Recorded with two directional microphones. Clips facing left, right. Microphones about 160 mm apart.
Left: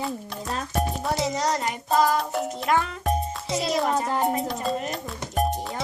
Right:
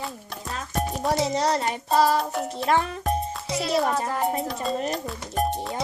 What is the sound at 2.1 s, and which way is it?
Music, centre (ahead or behind).